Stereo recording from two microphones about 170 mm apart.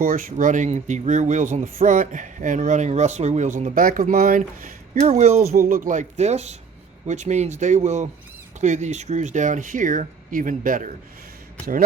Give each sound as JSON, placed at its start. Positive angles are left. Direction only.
{"t": 0.0, "sound": "speech", "side_deg": -55}
{"t": 4.9, "sound": "speech", "side_deg": -40}
{"t": 5.5, "sound": "speech", "side_deg": -55}